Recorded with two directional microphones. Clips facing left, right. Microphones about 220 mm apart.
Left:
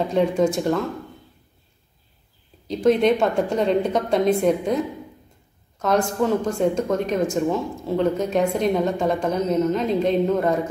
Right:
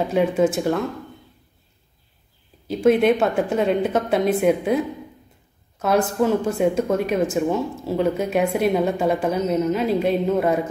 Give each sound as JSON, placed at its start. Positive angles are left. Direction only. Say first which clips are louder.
{"t": 0.1, "sound": "a woman's voice", "louder": "right 1 dB", "side_deg": -5}
{"t": 2.7, "sound": "a woman's voice", "louder": "right 1 dB", "side_deg": -5}
{"t": 5.8, "sound": "a woman's voice", "louder": "right 1 dB", "side_deg": -5}